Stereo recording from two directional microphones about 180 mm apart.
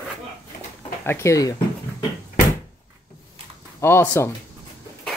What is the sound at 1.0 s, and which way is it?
Speech, 15° left (ahead or behind).